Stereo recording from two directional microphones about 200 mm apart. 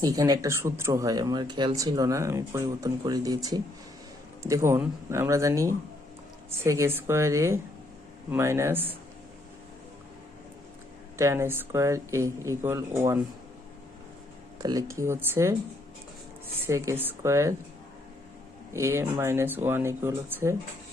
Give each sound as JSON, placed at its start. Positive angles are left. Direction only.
{"t": 0.0, "sound": "speech", "side_deg": -15}
{"t": 11.2, "sound": "speech", "side_deg": -15}
{"t": 14.6, "sound": "speech", "side_deg": -20}
{"t": 16.6, "sound": "speech", "side_deg": -15}
{"t": 18.7, "sound": "speech", "side_deg": -15}